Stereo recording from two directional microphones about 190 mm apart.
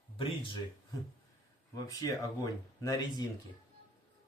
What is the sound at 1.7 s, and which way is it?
Speech, 20° left (ahead or behind).